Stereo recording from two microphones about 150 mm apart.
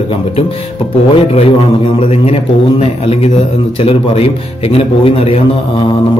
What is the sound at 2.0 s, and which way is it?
A man's voice, 40° left (ahead or behind).